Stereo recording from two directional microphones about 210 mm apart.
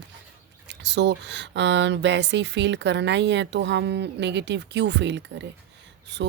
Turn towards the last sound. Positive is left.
turn(degrees=-55)  # may be behind; listen again after turning